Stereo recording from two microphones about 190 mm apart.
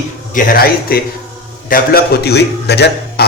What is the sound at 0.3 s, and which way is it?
A man's voice, 50° left (ahead or behind).